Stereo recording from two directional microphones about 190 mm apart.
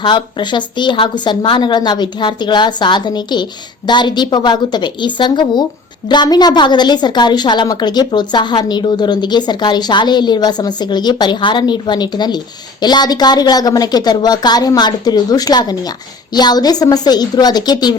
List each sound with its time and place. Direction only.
0.0 s a woman's voice: 25° left (ahead or behind)